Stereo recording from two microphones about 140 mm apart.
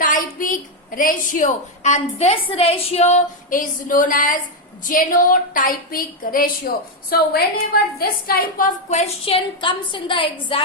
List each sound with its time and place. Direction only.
0.0 s a woman's voice: 75° left (ahead or behind); by 3.2 s 50° left (ahead or behind)
3.5 s a sound: 75° left (ahead or behind)
4.8 s a woman's voice: 75° left (ahead or behind)
9.0 s a woman's voice: 40° left (ahead or behind)